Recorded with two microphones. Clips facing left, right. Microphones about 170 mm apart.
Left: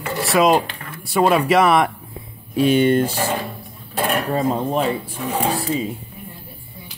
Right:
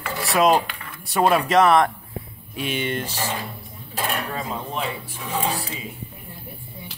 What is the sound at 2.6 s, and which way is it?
Speech, 40° left (ahead or behind).